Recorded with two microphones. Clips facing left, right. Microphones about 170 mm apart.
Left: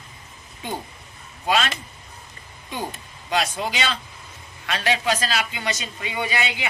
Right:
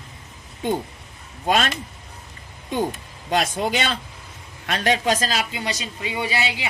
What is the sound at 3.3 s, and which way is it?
A man's voice, 50° right (ahead or behind).